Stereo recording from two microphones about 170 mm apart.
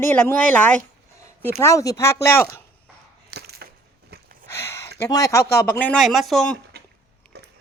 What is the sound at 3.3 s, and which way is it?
Crushing, 70° right (ahead or behind).